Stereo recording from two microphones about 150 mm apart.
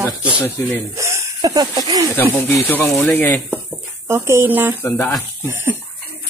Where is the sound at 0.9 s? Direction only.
20° right (ahead or behind).